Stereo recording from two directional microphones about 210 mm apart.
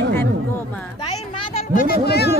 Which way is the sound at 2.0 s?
50° left (ahead or behind).